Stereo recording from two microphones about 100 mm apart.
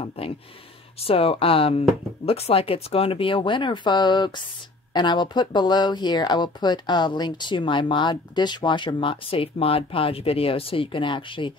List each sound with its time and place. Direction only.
0.2 s speech: 75° left (ahead or behind); by 11.5 s 55° left (ahead or behind)